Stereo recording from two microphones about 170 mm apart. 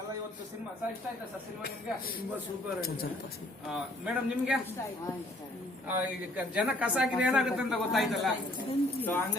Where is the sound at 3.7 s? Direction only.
5° right (ahead or behind).